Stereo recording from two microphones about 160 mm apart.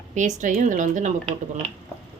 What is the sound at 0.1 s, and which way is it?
Speech, 50° right (ahead or behind).